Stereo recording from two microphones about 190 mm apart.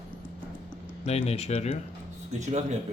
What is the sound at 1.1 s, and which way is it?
Speech, 35° left (ahead or behind).